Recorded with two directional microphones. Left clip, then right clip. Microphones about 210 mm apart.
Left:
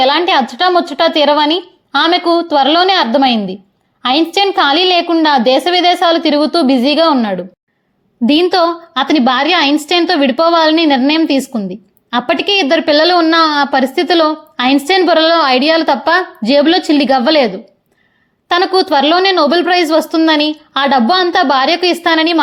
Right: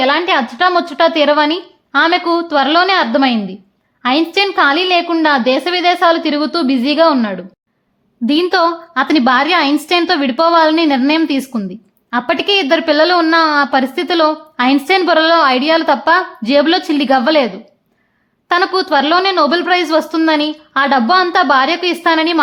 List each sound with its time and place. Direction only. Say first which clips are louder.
0.0 s a woman's voice: left 2 dB; centre (ahead or behind)